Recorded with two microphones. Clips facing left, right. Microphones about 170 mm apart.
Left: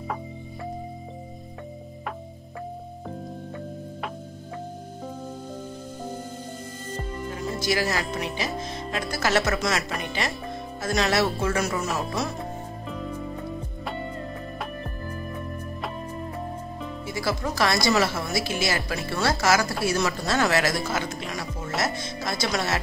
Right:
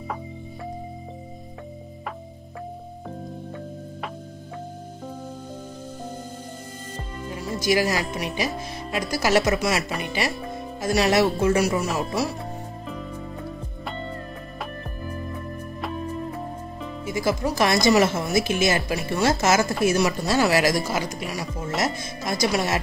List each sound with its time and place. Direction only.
7.5 s speech: 15° right (ahead or behind)
17.0 s speech: 15° right (ahead or behind)